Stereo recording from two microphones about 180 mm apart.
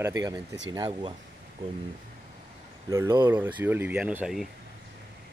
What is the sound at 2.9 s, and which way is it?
Speech, 15° right (ahead or behind).